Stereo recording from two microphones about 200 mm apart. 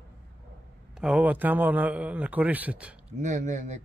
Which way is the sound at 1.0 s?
5° right (ahead or behind).